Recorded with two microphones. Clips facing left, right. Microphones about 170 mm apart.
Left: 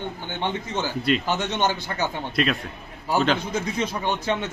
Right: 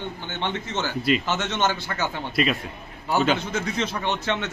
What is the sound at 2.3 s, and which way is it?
A man's voice, centre (ahead or behind).